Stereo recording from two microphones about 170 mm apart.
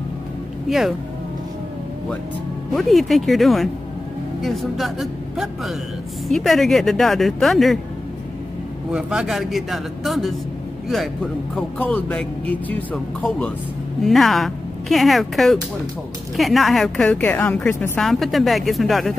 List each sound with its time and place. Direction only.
0.7 s a woman's voice: centre (ahead or behind)
2.7 s a woman's voice: centre (ahead or behind)
8.9 s a woman's voice: 5° right (ahead or behind)
11.8 s a woman's voice: 10° left (ahead or behind)
18.0 s a woman's voice: centre (ahead or behind)